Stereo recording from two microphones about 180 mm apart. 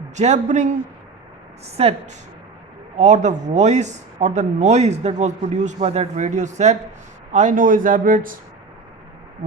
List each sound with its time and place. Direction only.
0.2 s speech: 40° right (ahead or behind)
1.7 s speech: 35° right (ahead or behind); by 8.4 s 50° right (ahead or behind)